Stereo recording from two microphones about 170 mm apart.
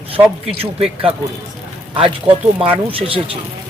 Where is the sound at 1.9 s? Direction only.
30° right (ahead or behind).